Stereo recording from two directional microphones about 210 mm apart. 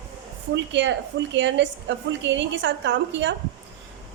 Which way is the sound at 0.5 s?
60° right (ahead or behind).